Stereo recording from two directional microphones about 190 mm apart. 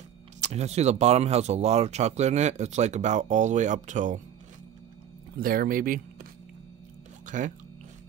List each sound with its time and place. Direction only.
0.4 s speech: 35° right (ahead or behind)
5.4 s speech: 50° right (ahead or behind)
7.2 s speech: 40° right (ahead or behind)